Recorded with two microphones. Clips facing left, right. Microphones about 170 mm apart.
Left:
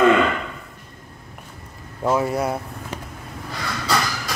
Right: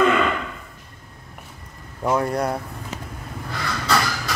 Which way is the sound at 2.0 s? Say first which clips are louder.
Left 1 dB; 5° left (ahead or behind).